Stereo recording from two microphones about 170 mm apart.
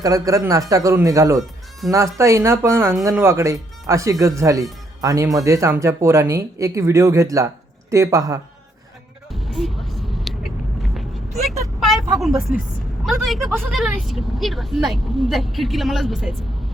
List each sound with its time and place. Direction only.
0.0 s a man's voice: 20° right (ahead or behind)
9.3 s vehicle: centre (ahead or behind)
13.1 s speech: centre (ahead or behind)